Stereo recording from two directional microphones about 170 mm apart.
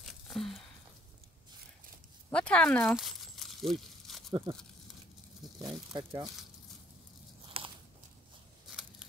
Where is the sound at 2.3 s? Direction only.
5° left (ahead or behind).